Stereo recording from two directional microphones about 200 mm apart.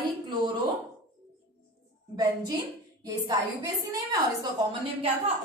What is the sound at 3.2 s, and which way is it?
Speech, 20° right (ahead or behind).